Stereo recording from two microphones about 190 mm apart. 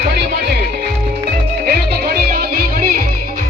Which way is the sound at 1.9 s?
55° right (ahead or behind).